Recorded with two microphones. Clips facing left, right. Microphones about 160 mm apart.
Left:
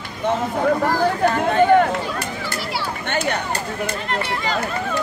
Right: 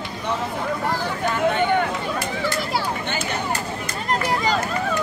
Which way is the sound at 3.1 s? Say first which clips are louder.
Left 5 dB; 65° left (ahead or behind).